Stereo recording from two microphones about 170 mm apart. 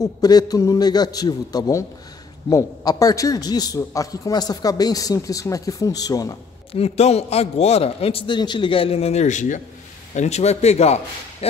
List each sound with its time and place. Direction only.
0.0 s a man's voice: 20° left (ahead or behind)
6.7 s a man's voice: 35° left (ahead or behind)